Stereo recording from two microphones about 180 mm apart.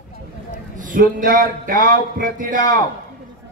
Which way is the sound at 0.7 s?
45° right (ahead or behind).